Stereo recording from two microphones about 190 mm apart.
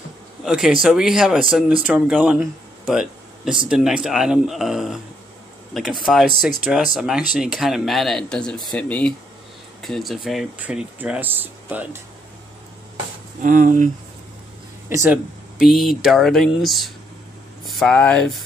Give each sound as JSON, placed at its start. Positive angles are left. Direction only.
{"t": 0.5, "sound": "speech", "side_deg": -5}
{"t": 2.9, "sound": "a sound", "side_deg": -5}
{"t": 3.6, "sound": "speech", "side_deg": -5}
{"t": 13.4, "sound": "speech", "side_deg": -45}
{"t": 14.9, "sound": "speech", "side_deg": -15}
{"t": 15.6, "sound": "speech", "side_deg": 0}